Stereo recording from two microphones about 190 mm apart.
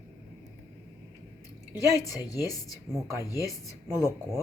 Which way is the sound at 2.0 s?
20° left (ahead or behind).